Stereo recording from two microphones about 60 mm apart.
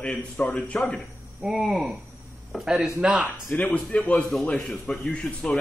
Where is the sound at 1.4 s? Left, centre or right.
Centre.